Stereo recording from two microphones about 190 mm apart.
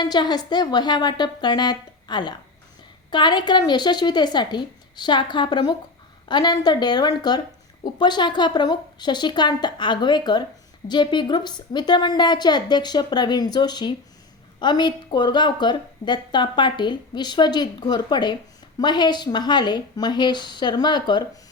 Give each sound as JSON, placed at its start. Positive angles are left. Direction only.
{"t": 0.0, "sound": "a woman's voice", "side_deg": 20}